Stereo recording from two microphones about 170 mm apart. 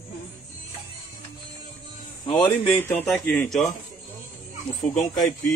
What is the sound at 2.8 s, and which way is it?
Speech, 10° left (ahead or behind).